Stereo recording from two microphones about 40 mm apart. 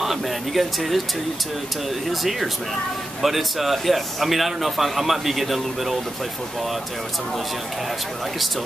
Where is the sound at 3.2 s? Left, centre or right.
Centre.